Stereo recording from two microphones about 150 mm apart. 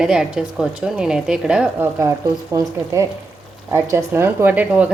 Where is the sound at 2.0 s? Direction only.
20° right (ahead or behind).